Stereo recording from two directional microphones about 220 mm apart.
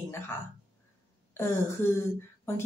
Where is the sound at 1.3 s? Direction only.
10° left (ahead or behind).